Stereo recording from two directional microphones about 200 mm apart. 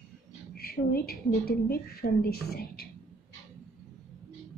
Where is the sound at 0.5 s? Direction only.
50° left (ahead or behind).